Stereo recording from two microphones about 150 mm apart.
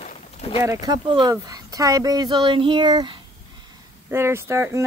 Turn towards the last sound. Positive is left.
turn(degrees=-15)  # may be behind; listen again after turning